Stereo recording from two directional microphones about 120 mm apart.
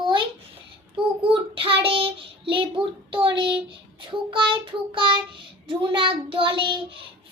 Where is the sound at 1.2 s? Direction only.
50° right (ahead or behind).